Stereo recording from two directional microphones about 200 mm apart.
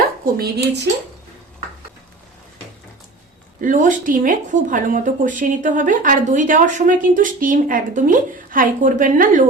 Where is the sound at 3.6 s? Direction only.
40° right (ahead or behind).